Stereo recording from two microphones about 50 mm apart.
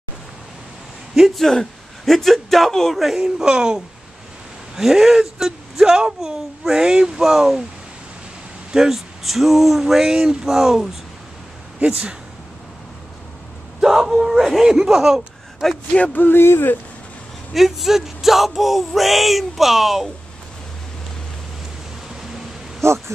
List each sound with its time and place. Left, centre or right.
1.1 s speech: centre
3.0 s speech: centre
8.7 s speech: centre
11.8 s speech: right
13.7 s speech: centre
15.9 s speech: left
17.6 s speech: centre
22.8 s speech: right